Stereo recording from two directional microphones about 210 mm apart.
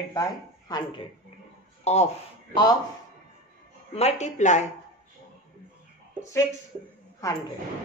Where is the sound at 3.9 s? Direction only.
30° left (ahead or behind).